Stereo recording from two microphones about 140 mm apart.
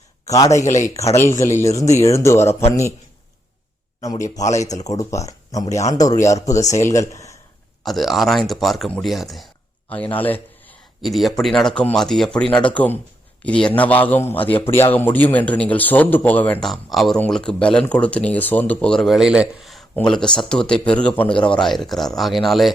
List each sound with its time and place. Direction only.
0.3 s speech: 25° left (ahead or behind)
4.0 s speech: 25° left (ahead or behind)
7.9 s speech: centre (ahead or behind)
9.9 s a man's voice: 10° left (ahead or behind)
11.0 s a man's voice: centre (ahead or behind)